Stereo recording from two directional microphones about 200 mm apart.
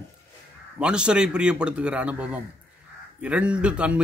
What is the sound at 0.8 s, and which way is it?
A man's voice, 5° right (ahead or behind).